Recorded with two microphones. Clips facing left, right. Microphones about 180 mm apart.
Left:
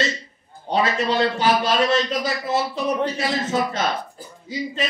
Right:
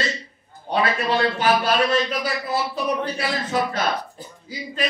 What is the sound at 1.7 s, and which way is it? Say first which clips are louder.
A man's voice: left 1 dB; 25° left (ahead or behind).